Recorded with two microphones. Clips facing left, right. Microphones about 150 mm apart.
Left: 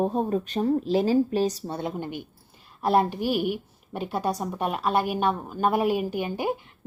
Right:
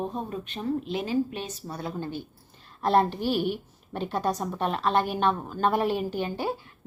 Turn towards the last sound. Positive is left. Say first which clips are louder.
# left 2 dB
turn(degrees=15)  # may be behind; listen again after turning